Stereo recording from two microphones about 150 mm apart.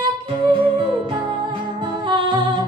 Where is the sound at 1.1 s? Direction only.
30° right (ahead or behind).